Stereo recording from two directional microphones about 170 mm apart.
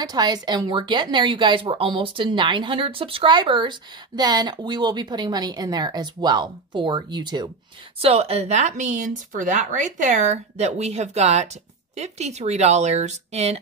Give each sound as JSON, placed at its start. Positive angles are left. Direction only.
{"t": 0.0, "sound": "a woman's voice", "side_deg": -25}
{"t": 8.0, "sound": "speech", "side_deg": -35}